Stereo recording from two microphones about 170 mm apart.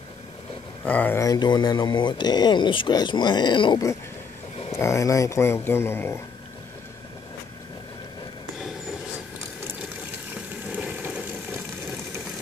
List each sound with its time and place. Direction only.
0.8 s speech: 10° left (ahead or behind)
10.7 s water: 5° right (ahead or behind)